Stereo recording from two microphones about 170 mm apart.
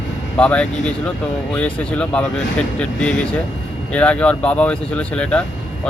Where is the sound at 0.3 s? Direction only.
5° left (ahead or behind).